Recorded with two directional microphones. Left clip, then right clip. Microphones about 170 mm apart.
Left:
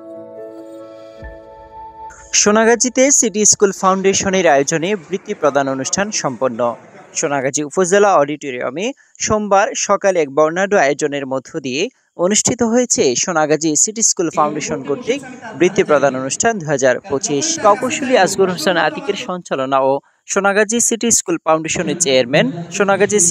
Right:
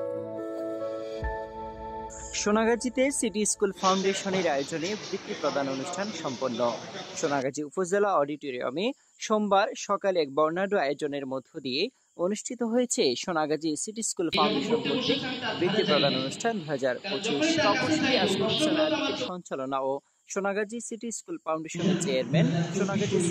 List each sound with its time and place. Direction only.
2.3 s speech: 45° left (ahead or behind)
12.3 s speech: 55° left (ahead or behind)
12.8 s speech: 35° left (ahead or behind); by 22.9 s 60° left (ahead or behind)